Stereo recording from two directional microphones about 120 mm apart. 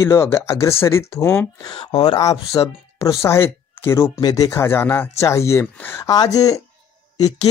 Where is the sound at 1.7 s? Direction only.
40° left (ahead or behind).